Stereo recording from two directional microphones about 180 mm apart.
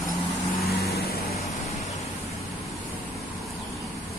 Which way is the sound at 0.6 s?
60° left (ahead or behind).